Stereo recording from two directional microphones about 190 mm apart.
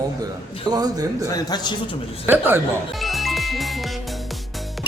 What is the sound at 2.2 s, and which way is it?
Speech, 10° right (ahead or behind).